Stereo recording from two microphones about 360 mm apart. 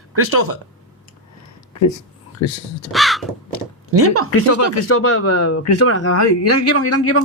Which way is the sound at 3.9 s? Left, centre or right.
Right.